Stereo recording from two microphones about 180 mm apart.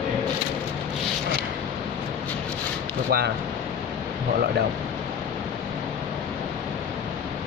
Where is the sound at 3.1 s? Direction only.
60° right (ahead or behind).